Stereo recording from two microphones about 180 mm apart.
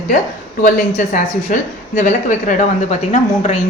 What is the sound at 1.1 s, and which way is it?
A woman's voice, 45° left (ahead or behind).